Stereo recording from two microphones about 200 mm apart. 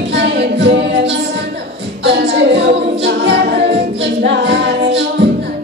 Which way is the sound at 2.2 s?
65° right (ahead or behind).